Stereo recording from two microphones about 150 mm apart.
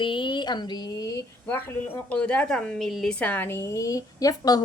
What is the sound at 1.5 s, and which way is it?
A woman's voice, 10° left (ahead or behind).